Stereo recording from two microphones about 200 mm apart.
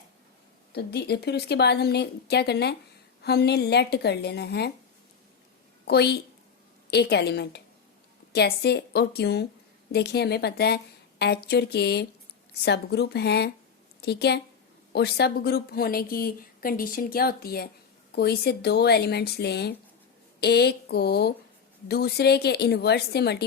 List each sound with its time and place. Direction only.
0.7 s a woman's voice: 55° left (ahead or behind)
5.9 s a woman's voice: 55° left (ahead or behind)